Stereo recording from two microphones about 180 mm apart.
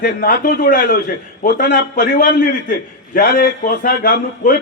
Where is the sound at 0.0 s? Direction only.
55° left (ahead or behind).